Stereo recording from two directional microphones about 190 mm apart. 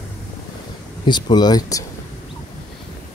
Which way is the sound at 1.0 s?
25° left (ahead or behind).